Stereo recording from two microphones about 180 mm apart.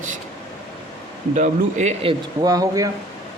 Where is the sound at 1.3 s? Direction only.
40° right (ahead or behind).